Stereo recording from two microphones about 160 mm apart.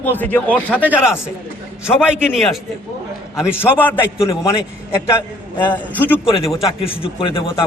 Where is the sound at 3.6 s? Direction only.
15° left (ahead or behind).